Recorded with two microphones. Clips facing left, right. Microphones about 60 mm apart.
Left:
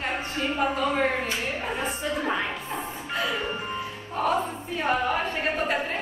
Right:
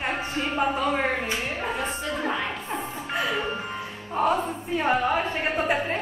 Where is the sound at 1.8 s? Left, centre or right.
Centre.